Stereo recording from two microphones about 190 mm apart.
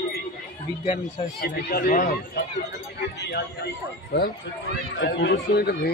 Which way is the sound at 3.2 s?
60° left (ahead or behind).